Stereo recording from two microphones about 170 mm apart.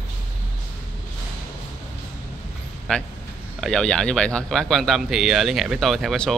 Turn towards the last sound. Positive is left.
turn(degrees=0)  # may be behind; listen again after turning